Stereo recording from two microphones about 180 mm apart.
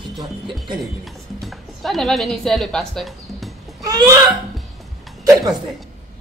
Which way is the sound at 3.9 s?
20° right (ahead or behind).